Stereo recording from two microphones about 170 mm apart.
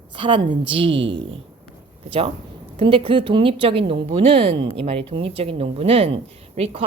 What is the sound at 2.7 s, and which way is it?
Speech, 35° right (ahead or behind).